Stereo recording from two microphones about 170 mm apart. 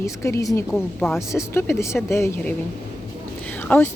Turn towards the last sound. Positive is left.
turn(degrees=10)  # may be behind; listen again after turning